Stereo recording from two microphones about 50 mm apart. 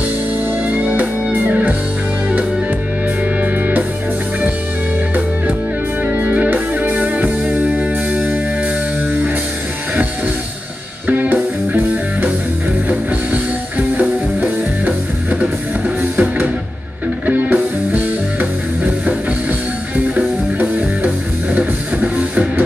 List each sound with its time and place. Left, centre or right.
0.7 s music: right
3.3 s music: right
6.0 s music: right
7.4 s music: centre
7.7 s music: right
11.1 s music: right
20.2 s music: right